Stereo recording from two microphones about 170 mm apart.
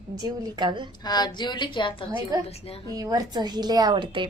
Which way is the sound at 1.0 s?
25° left (ahead or behind).